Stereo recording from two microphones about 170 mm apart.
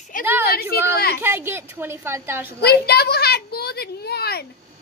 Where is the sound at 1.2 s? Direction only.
15° right (ahead or behind).